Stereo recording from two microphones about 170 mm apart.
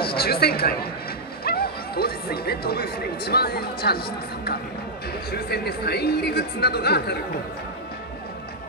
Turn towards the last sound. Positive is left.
turn(degrees=70)  # may be behind; listen again after turning